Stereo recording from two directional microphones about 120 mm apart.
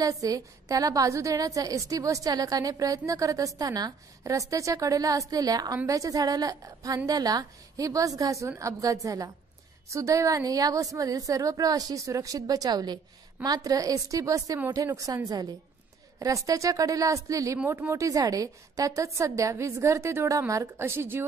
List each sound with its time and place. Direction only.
0.0 s a woman's voice: 30° right (ahead or behind)
16.2 s a woman's voice: 30° right (ahead or behind)